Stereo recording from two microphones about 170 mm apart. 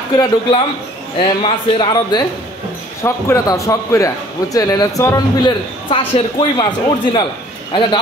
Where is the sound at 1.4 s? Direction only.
30° left (ahead or behind).